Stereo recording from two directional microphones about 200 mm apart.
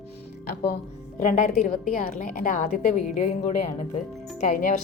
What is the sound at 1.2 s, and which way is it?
A woman's voice, 35° left (ahead or behind).